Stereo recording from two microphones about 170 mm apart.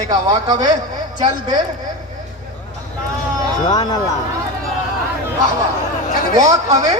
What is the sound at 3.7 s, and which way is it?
Speech, 25° left (ahead or behind).